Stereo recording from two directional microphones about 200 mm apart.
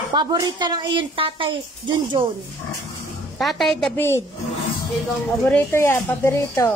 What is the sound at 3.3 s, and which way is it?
Speech, centre (ahead or behind).